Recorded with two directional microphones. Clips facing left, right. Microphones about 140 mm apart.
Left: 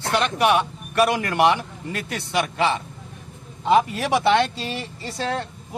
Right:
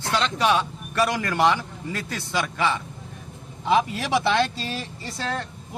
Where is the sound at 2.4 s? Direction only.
25° left (ahead or behind).